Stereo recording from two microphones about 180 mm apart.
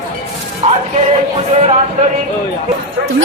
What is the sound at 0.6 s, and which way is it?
Music, 30° right (ahead or behind).